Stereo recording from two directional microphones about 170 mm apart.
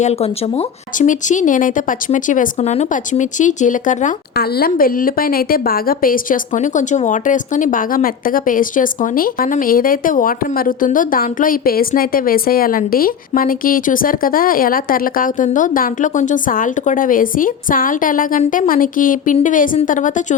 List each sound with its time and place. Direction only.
0.0 s speech: 40° left (ahead or behind)